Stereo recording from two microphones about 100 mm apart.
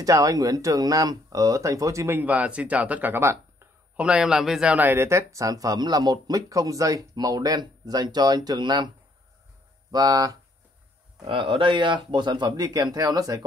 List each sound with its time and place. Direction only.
0.0 s speech: 35° right (ahead or behind)
2.1 s speech: 15° right (ahead or behind)
3.9 s speech: 10° right (ahead or behind); by 8.9 s 50° right (ahead or behind)
9.8 s speech: 35° right (ahead or behind)
11.2 s speech: 60° right (ahead or behind); by 13.4 s 35° right (ahead or behind)